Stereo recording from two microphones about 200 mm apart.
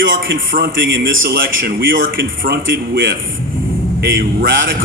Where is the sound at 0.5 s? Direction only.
60° right (ahead or behind).